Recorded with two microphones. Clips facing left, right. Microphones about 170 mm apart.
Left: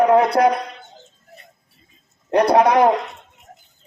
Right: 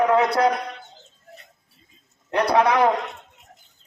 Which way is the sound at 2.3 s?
45° left (ahead or behind).